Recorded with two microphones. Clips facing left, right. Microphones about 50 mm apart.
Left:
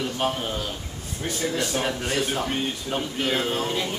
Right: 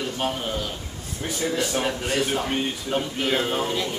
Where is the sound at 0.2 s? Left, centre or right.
Centre.